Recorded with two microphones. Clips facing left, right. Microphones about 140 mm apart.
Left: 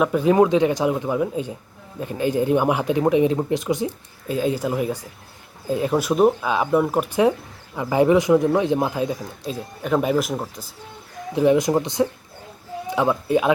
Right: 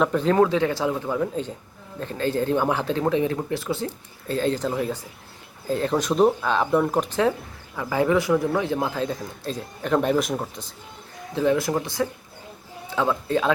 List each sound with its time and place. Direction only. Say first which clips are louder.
0.0 s speech: left 3 dB; 10° left (ahead or behind)
11.3 s speech: left 4 dB; 20° left (ahead or behind)